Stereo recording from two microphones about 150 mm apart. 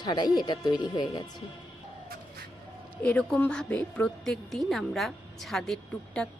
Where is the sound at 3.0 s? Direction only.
5° left (ahead or behind).